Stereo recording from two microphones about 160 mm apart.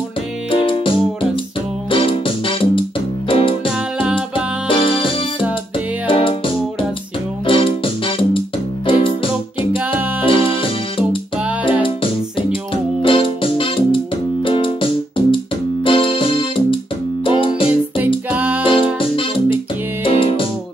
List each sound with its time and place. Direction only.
0.5 s music: 35° left (ahead or behind)
4.6 s music: 35° left (ahead or behind)
18.3 s music: 10° right (ahead or behind)
18.6 s music: 35° left (ahead or behind)